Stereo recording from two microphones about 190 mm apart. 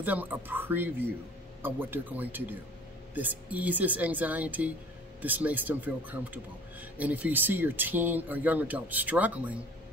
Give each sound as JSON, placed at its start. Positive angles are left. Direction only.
{"t": 0.0, "sound": "a man's voice", "side_deg": -10}